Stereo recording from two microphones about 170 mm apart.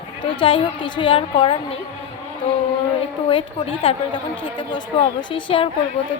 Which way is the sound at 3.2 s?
30° left (ahead or behind).